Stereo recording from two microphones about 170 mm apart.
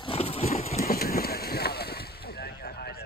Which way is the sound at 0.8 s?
60° left (ahead or behind).